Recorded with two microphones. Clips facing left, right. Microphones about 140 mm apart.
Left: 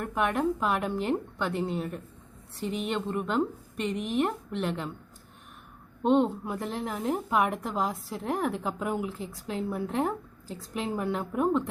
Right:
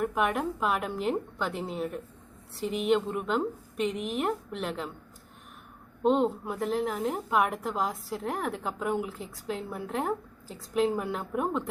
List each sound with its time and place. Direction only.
0.0 s a woman's voice: 5° right (ahead or behind)
6.0 s a woman's voice: centre (ahead or behind)